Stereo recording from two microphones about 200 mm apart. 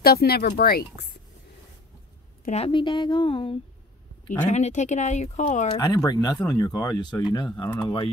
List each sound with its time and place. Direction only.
0.0 s speech: 50° left (ahead or behind)
2.4 s speech: 30° left (ahead or behind)
5.8 s speech: 20° left (ahead or behind)